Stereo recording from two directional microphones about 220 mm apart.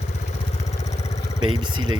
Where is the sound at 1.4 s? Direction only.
20° right (ahead or behind).